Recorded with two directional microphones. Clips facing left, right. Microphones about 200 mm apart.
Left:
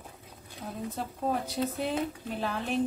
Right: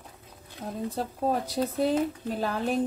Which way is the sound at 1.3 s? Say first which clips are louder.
Right 2 dB; 35° right (ahead or behind).